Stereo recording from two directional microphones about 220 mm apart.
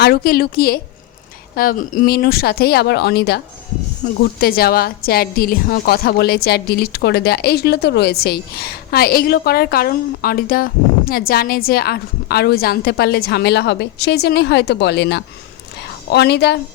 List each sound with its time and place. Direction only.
0.0 s a woman's voice: 45° left (ahead or behind)